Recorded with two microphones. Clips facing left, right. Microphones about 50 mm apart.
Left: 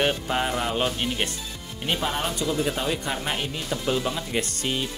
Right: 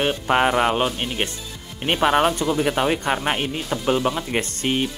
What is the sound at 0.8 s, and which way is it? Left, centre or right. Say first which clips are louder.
Speech: right 2 dB; centre.